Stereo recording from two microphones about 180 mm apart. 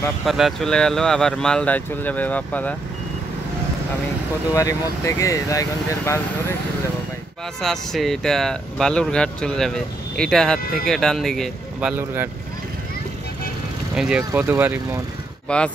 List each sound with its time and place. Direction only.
0.2 s speech: centre (ahead or behind)
4.6 s speech: 20° left (ahead or behind)
7.6 s speech: centre (ahead or behind)
13.9 s speech: 5° right (ahead or behind)
15.4 s speech: 5° left (ahead or behind)